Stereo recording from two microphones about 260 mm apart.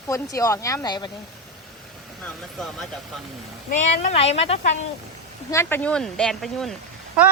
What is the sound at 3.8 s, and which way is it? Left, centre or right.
Speech, left.